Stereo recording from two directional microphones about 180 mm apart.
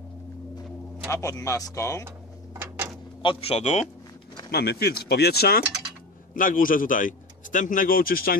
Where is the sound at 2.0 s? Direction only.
15° right (ahead or behind).